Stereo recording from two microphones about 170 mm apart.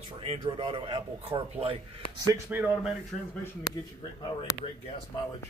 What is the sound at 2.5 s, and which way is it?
Speech, 10° right (ahead or behind).